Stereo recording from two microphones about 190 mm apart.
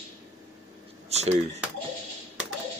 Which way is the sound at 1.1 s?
35° right (ahead or behind).